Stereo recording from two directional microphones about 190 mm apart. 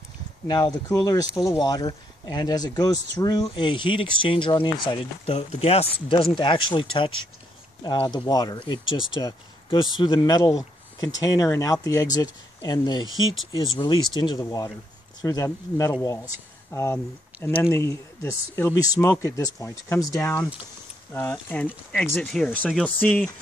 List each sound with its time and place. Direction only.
0.5 s speech: 20° left (ahead or behind)